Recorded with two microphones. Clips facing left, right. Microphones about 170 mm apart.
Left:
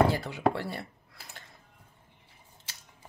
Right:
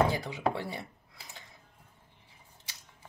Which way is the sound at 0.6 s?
15° right (ahead or behind).